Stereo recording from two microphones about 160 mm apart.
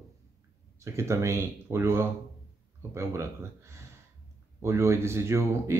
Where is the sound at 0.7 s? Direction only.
15° right (ahead or behind).